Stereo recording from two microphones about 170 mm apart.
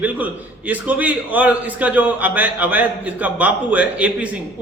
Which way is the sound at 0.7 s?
10° right (ahead or behind).